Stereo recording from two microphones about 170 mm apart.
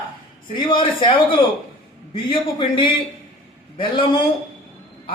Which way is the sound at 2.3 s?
30° left (ahead or behind).